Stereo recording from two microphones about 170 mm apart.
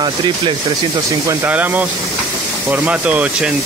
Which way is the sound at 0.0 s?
25° right (ahead or behind).